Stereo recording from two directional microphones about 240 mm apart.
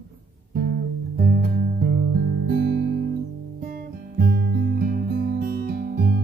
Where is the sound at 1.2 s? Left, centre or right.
Right.